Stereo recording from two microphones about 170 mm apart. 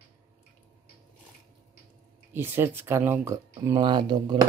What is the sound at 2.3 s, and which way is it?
Speech, 15° right (ahead or behind).